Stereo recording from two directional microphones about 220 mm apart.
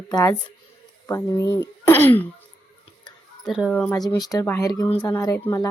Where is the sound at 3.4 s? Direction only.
Centre (ahead or behind).